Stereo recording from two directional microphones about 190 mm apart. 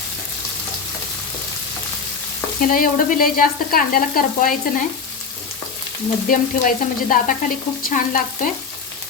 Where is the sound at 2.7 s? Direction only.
50° left (ahead or behind).